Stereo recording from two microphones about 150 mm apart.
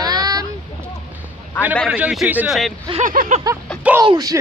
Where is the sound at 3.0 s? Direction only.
65° right (ahead or behind).